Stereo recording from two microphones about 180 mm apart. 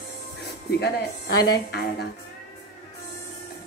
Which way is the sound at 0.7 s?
65° left (ahead or behind).